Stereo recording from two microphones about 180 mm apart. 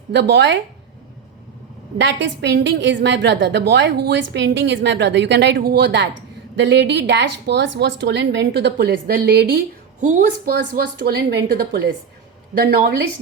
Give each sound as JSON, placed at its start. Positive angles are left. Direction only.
{"t": 0.1, "sound": "a woman's voice", "side_deg": -70}
{"t": 2.0, "sound": "a woman's voice", "side_deg": -80}
{"t": 10.0, "sound": "speech", "side_deg": -45}